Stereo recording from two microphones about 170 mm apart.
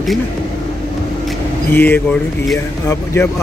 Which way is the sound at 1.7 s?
10° left (ahead or behind).